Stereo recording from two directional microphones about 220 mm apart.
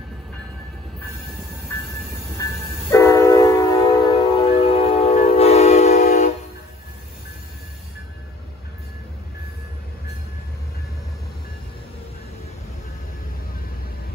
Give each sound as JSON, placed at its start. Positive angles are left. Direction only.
{"t": 2.9, "sound": "train", "side_deg": 15}
{"t": 4.4, "sound": "train", "side_deg": 25}